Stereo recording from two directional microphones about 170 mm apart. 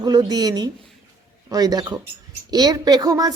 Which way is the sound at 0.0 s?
20° right (ahead or behind).